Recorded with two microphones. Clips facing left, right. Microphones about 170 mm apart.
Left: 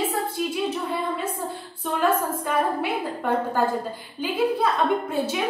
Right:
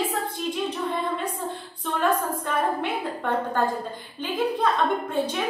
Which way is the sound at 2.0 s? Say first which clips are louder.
Left 1 dB; 5° left (ahead or behind).